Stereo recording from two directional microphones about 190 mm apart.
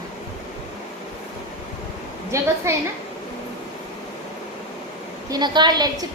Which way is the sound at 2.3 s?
15° right (ahead or behind).